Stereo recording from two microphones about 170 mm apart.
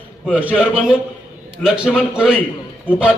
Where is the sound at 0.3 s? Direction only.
10° right (ahead or behind).